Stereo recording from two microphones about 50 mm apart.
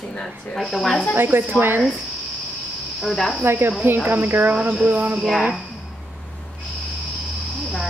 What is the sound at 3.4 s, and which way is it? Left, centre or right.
Speech, right.